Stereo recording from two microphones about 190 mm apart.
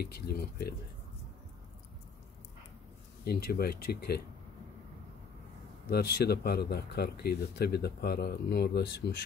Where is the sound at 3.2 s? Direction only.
55° left (ahead or behind).